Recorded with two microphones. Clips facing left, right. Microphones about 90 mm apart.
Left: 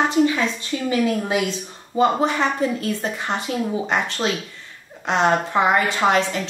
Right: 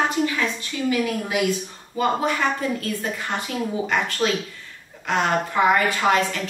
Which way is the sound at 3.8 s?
25° left (ahead or behind).